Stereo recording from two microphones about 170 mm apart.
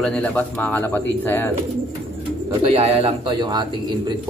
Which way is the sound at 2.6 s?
35° right (ahead or behind).